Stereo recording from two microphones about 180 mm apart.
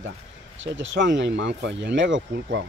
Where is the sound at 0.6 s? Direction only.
90° right.